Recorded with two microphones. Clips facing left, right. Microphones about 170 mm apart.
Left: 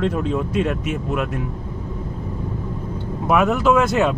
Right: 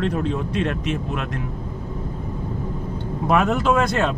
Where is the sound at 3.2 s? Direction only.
5° left (ahead or behind).